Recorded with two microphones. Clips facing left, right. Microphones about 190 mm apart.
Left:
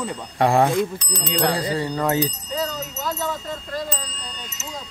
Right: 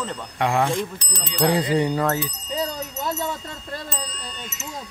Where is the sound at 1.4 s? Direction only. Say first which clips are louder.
Right 4 dB; 20° right (ahead or behind).